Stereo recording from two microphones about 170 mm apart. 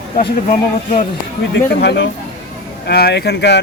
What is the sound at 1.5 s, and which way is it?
Speech, 85° left.